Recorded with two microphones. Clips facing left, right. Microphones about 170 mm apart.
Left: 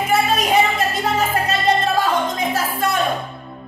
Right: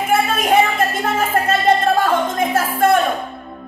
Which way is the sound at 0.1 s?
50° right (ahead or behind).